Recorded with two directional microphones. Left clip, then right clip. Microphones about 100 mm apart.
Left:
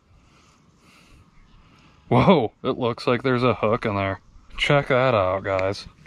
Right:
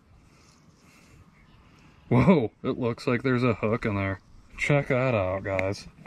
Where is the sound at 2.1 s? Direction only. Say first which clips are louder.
Left 5 dB; 30° right (ahead or behind).